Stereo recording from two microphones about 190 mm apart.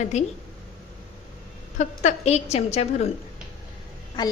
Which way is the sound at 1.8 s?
35° left (ahead or behind).